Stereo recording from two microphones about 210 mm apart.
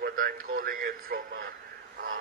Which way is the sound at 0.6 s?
40° right (ahead or behind).